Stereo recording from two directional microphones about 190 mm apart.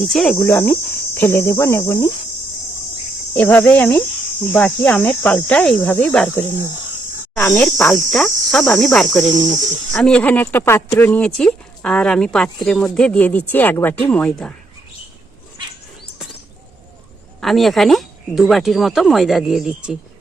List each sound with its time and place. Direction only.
0.0 s speech: 5° left (ahead or behind)
0.3 s cricket: 15° left (ahead or behind)
3.3 s cricket: 10° left (ahead or behind)
7.3 s speech: 10° left (ahead or behind)
13.5 s cricket: 10° left (ahead or behind)
17.4 s speech: centre (ahead or behind)